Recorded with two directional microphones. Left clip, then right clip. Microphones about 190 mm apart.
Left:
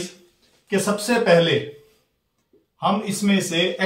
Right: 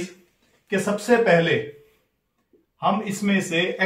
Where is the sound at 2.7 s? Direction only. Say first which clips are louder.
Left 1 dB; 25° right (ahead or behind).